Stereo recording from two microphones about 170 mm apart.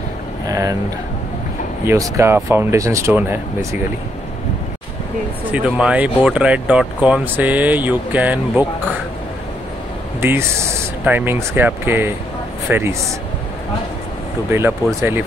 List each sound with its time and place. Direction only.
0.5 s a sound: 20° right (ahead or behind)
1.9 s speech: 15° right (ahead or behind)
5.5 s speech: 5° right (ahead or behind)
11.1 s speech: 10° right (ahead or behind)
14.5 s speech: 15° right (ahead or behind)